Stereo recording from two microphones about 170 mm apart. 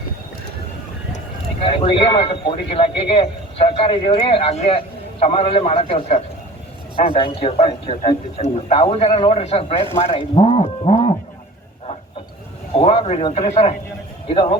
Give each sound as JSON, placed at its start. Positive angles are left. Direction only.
{"t": 1.6, "sound": "a man's voice", "side_deg": 35}
{"t": 12.7, "sound": "a man's voice", "side_deg": 35}